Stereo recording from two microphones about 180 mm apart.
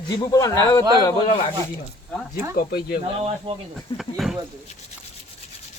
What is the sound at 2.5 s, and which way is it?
Speech, 60° left (ahead or behind).